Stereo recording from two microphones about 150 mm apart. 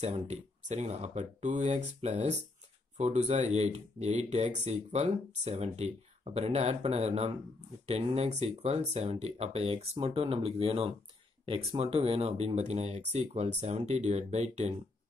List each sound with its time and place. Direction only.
0.0 s speech: 45° right (ahead or behind)